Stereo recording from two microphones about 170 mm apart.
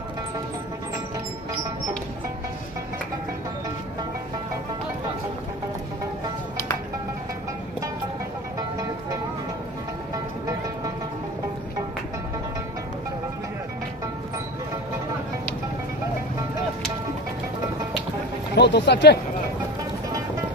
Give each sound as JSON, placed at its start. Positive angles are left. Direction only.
{"t": 8.5, "sound": "vehicle", "side_deg": -20}
{"t": 18.5, "sound": "speech", "side_deg": 90}